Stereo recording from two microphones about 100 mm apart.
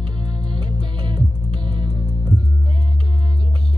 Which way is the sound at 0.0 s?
50° right (ahead or behind).